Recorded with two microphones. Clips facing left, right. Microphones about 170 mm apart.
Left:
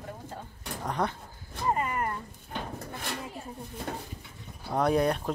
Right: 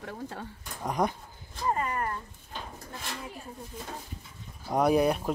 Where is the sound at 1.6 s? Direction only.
20° left (ahead or behind).